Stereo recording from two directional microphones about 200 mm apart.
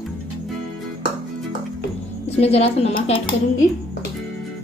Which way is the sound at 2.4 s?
30° left (ahead or behind).